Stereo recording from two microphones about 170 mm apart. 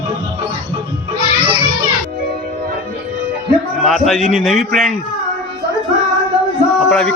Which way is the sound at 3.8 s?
Centre (ahead or behind).